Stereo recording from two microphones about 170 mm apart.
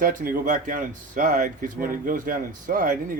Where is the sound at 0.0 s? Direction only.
55° right (ahead or behind).